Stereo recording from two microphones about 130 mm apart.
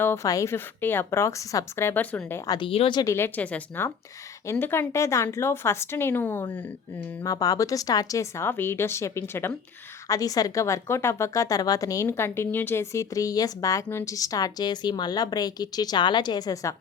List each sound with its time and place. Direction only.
0.0 s a woman's voice: 20° left (ahead or behind)
2.5 s a woman's voice: 40° left (ahead or behind)
3.0 s a woman's voice: 20° left (ahead or behind)
7.3 s a woman's voice: 30° left (ahead or behind)